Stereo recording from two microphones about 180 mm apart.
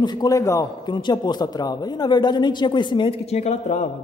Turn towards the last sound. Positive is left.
turn(degrees=40)  # may be behind; listen again after turning